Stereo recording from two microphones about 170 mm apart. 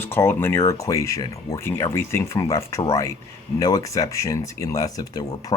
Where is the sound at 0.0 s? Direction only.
15° left (ahead or behind).